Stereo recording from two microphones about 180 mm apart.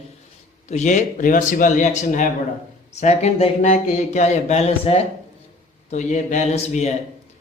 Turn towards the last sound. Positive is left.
turn(degrees=40)  # may be behind; listen again after turning